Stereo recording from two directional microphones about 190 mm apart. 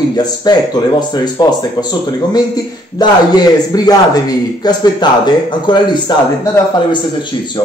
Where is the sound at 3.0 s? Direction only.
20° left (ahead or behind).